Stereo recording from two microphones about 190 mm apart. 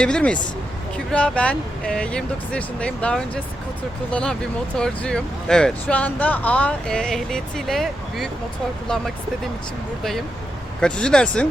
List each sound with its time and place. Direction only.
0.0 s speech: 5° left (ahead or behind)
10.0 s speech: centre (ahead or behind)